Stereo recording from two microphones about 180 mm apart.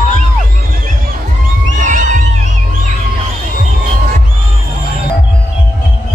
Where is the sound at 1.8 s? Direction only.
45° right (ahead or behind).